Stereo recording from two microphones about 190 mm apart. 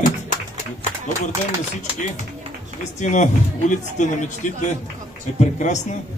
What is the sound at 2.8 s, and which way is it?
Speech, 40° left (ahead or behind).